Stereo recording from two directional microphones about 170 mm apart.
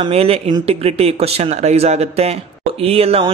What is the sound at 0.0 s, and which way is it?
Speech, 35° right (ahead or behind).